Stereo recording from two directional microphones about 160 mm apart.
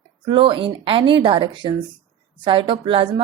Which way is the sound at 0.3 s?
30° right (ahead or behind).